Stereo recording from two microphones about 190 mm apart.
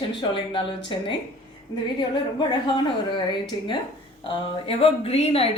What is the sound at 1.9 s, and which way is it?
A woman's voice, 25° left (ahead or behind).